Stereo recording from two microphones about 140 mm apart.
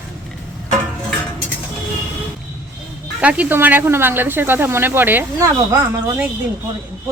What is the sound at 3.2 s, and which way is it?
Speech, 10° right (ahead or behind).